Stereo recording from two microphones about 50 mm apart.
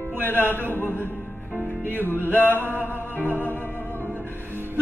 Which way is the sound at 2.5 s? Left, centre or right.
Right.